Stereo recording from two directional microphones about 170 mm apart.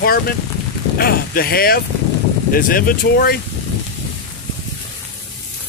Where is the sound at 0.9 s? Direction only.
60° left (ahead or behind).